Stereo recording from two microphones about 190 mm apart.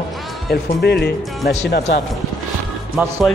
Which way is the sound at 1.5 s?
70° left (ahead or behind).